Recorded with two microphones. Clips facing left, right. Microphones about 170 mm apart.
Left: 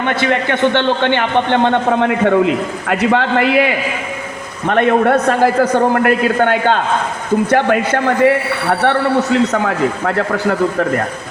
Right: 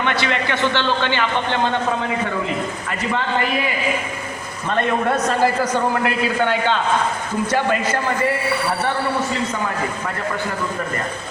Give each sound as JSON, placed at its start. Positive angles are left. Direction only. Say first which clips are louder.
{"t": 0.0, "sound": "a man's voice", "louder": "left 5 dB", "side_deg": 50}
{"t": 4.6, "sound": "a man's voice", "louder": "left 8 dB", "side_deg": 65}